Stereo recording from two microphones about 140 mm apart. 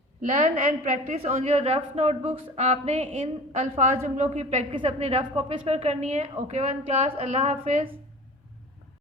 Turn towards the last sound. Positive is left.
turn(degrees=-40)  # may be behind; listen again after turning